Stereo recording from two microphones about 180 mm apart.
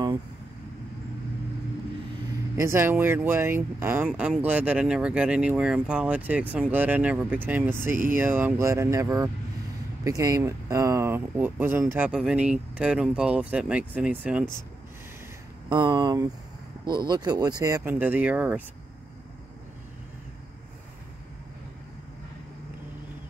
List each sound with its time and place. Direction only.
2.5 s speech: 15° right (ahead or behind)
15.7 s speech: 25° right (ahead or behind); by 18.6 s 10° right (ahead or behind)